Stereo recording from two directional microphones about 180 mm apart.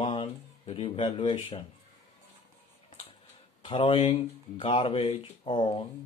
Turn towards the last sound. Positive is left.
turn(degrees=25)  # may be behind; listen again after turning